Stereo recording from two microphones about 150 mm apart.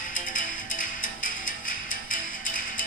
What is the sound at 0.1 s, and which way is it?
Music, 65° left (ahead or behind).